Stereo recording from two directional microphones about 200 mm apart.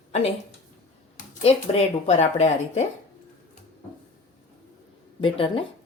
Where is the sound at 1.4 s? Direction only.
30° left (ahead or behind).